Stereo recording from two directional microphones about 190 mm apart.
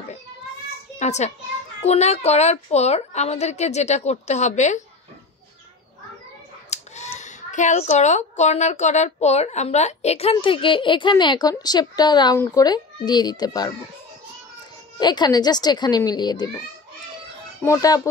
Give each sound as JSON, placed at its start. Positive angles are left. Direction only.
{"t": 0.9, "sound": "a child's voice", "side_deg": 35}
{"t": 6.7, "sound": "a child's voice", "side_deg": 35}
{"t": 15.0, "sound": "a child's voice", "side_deg": 20}